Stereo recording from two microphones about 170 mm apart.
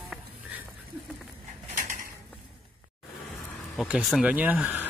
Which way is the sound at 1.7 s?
50° right (ahead or behind).